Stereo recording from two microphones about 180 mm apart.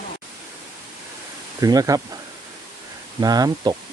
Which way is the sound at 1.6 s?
20° right (ahead or behind).